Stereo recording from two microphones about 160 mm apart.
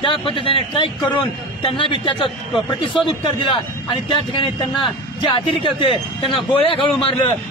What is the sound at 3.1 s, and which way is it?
Speech, 30° left (ahead or behind).